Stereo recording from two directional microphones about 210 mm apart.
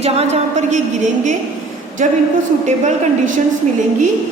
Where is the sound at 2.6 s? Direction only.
35° right (ahead or behind).